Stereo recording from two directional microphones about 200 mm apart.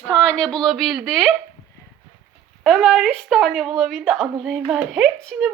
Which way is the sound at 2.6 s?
Centre (ahead or behind).